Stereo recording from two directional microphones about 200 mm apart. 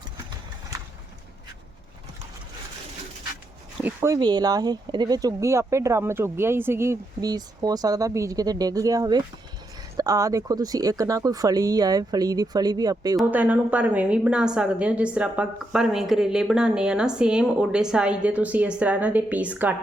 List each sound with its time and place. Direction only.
3.8 s speech: 10° right (ahead or behind)
13.1 s a woman's voice: 5° right (ahead or behind)